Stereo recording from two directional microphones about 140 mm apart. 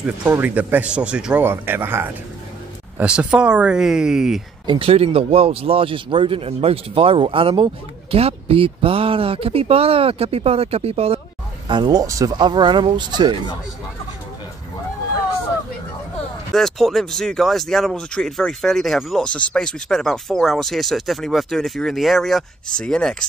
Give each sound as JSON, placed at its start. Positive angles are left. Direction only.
{"t": 0.0, "sound": "speech", "side_deg": -10}
{"t": 4.6, "sound": "speech", "side_deg": -40}
{"t": 11.6, "sound": "speech", "side_deg": -35}
{"t": 16.5, "sound": "speech", "side_deg": 0}